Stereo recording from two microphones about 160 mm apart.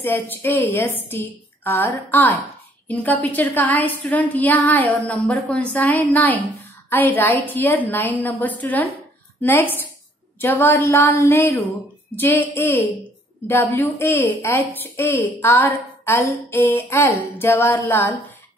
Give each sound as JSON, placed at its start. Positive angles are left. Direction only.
{"t": 0.0, "sound": "a woman's voice", "side_deg": 10}